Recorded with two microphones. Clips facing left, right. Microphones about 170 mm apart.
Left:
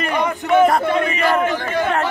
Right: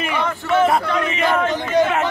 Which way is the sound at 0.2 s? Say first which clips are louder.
Left 4 dB; 15° left (ahead or behind).